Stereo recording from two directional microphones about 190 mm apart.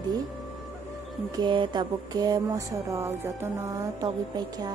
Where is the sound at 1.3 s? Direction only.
25° right (ahead or behind).